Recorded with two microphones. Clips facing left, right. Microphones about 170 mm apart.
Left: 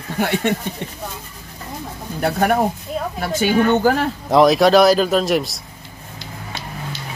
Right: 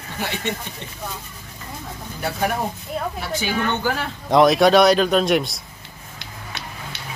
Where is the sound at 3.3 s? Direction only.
40° left (ahead or behind).